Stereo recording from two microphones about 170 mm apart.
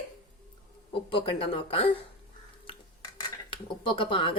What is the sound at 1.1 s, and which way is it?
Speech, 30° left (ahead or behind).